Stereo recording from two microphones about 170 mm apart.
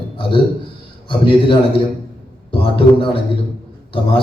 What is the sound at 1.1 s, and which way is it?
A man's voice, 30° left (ahead or behind).